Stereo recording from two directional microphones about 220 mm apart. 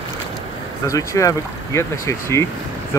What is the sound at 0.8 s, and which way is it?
Speech, 15° left (ahead or behind).